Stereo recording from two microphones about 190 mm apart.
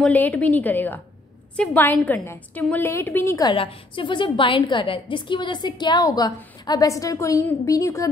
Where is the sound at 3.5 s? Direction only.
25° left (ahead or behind).